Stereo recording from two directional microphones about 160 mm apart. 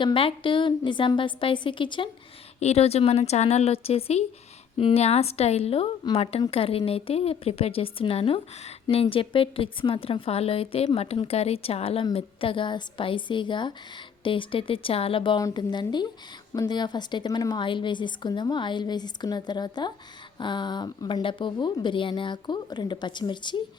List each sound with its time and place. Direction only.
0.0 s a woman's voice: 35° left (ahead or behind)